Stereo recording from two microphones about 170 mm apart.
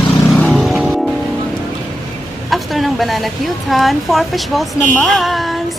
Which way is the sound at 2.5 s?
Centre (ahead or behind).